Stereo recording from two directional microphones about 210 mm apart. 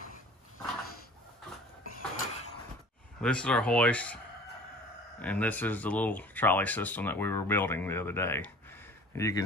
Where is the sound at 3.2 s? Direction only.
5° left (ahead or behind).